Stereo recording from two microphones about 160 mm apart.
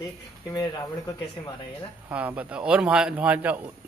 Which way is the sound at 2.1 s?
10° right (ahead or behind).